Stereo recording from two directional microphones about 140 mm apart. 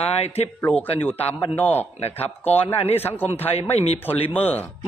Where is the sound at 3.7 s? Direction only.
50° left (ahead or behind).